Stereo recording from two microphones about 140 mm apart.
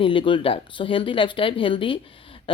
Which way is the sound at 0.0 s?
35° left (ahead or behind).